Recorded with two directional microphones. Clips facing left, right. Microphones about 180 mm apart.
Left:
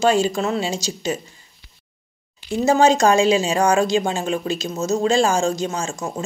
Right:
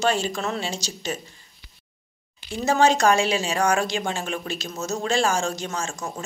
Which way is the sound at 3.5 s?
30° left (ahead or behind).